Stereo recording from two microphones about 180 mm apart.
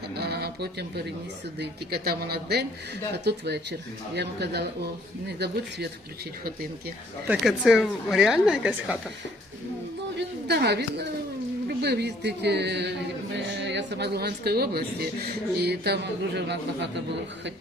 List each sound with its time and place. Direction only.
0.1 s a sound: 65° right (ahead or behind)
1.5 s a woman's voice: 60° right (ahead or behind)
7.3 s a woman's voice: centre (ahead or behind)
10.2 s a woman's voice: 65° right (ahead or behind)